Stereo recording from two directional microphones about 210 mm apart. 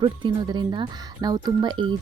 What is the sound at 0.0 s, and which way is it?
Speech, 20° right (ahead or behind).